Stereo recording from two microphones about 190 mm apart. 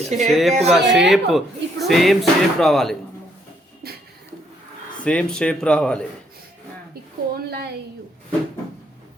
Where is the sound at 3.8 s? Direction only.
55° right (ahead or behind).